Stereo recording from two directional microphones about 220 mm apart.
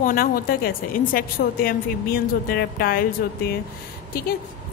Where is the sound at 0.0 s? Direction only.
40° left (ahead or behind).